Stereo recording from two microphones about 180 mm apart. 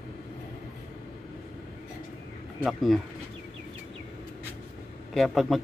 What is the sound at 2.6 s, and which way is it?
Speech, centre (ahead or behind).